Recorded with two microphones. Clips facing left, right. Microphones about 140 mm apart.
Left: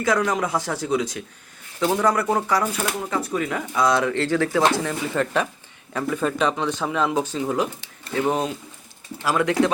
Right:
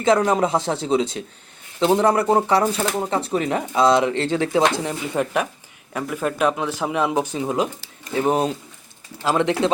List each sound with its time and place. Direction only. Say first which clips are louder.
0.0 s speech: right 4 dB; 25° right (ahead or behind)